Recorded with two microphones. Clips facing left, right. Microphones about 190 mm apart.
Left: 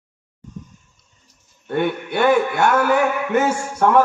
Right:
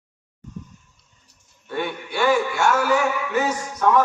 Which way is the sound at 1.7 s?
60° left (ahead or behind).